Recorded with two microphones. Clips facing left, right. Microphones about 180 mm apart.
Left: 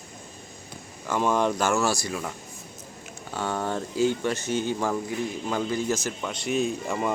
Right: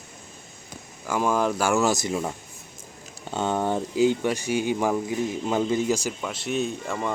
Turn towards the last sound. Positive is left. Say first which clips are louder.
# left 1 dB
turn(degrees=0)  # may be behind; listen again after turning